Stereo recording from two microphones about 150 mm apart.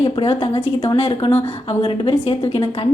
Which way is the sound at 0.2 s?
40° left (ahead or behind).